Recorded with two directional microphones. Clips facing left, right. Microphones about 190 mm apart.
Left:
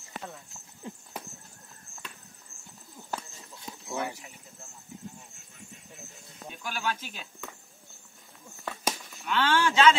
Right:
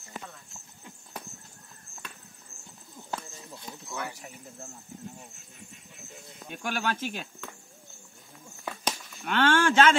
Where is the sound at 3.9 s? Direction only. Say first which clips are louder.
Left 4 dB; 20° left (ahead or behind).